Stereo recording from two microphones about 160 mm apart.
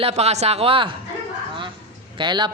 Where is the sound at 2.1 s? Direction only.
30° right (ahead or behind).